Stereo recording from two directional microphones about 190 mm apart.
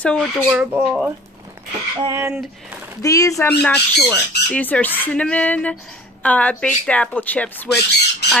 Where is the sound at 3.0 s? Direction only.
15° left (ahead or behind).